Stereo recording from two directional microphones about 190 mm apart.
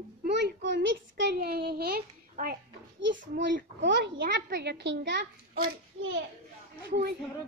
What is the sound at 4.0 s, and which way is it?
A child's voice, 55° right (ahead or behind).